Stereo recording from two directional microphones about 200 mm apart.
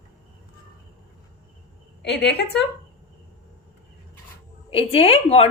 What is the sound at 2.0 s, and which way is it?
Speech, 60° left (ahead or behind).